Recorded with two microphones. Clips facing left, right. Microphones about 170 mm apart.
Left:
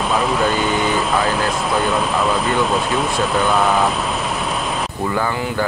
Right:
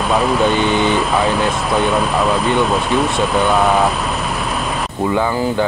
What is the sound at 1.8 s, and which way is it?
Speech, centre (ahead or behind).